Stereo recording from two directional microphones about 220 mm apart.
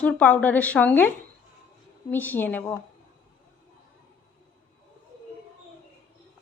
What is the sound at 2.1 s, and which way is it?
Speech, 10° left (ahead or behind).